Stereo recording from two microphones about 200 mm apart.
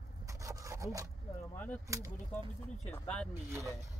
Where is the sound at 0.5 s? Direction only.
15° right (ahead or behind).